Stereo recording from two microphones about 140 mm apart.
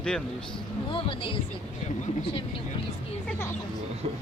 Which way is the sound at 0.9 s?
40° left (ahead or behind).